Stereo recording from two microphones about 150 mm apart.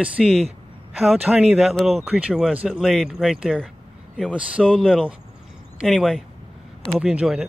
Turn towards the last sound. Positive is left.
turn(degrees=-5)  # may be behind; listen again after turning